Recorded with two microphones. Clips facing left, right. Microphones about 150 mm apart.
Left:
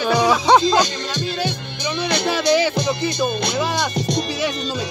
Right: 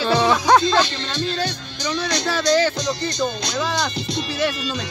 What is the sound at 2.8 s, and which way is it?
Speech, 55° left (ahead or behind).